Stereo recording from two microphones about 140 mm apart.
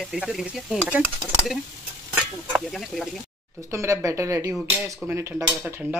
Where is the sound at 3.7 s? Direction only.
20° right (ahead or behind).